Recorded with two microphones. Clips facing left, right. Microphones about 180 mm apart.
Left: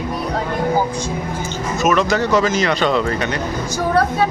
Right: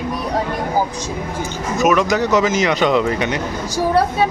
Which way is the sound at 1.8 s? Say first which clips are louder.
Right 1 dB; 15° right (ahead or behind).